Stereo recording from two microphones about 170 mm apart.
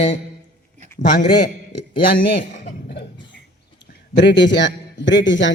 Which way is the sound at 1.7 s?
80° left.